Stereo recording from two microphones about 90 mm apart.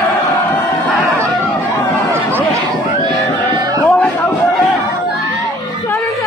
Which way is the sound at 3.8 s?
15° left (ahead or behind).